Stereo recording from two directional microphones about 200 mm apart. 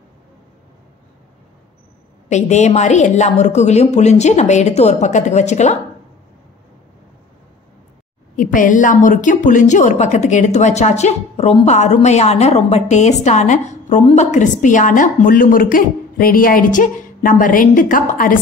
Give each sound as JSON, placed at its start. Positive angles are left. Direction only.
{"t": 2.2, "sound": "a woman's voice", "side_deg": 35}
{"t": 8.4, "sound": "a woman's voice", "side_deg": 40}